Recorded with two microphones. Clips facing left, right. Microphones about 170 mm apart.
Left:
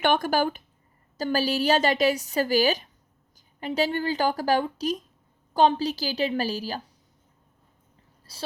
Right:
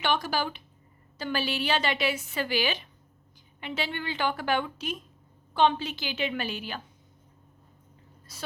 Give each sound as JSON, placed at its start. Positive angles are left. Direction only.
{"t": 0.0, "sound": "a woman's voice", "side_deg": 50}
{"t": 8.3, "sound": "a woman's voice", "side_deg": 30}